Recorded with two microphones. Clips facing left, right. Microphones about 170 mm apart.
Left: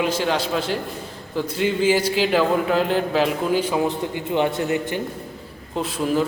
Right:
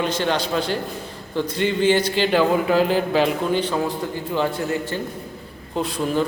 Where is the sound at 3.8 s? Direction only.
20° left (ahead or behind).